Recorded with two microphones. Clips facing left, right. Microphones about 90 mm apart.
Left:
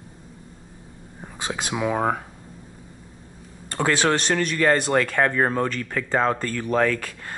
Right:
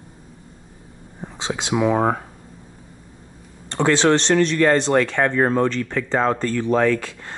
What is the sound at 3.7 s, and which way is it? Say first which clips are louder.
Speech: right 4 dB; 5° left (ahead or behind).